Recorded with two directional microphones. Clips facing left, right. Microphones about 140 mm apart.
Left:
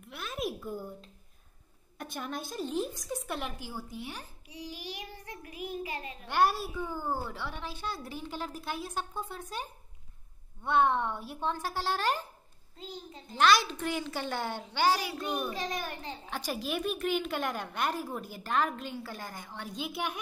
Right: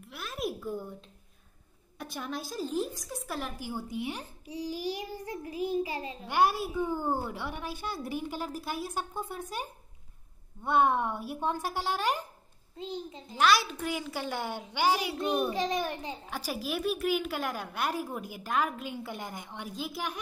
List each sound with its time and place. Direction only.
0.0 s a sound: centre (ahead or behind)
2.0 s a woman's voice: centre (ahead or behind)
3.6 s a child's voice: 15° right (ahead or behind)
4.5 s child singing: 40° right (ahead or behind)
6.2 s a child's voice: 10° right (ahead or behind)
13.4 s a child's voice: 5° right (ahead or behind)
19.0 s a woman's voice: 20° right (ahead or behind)
19.7 s a woman's voice: centre (ahead or behind)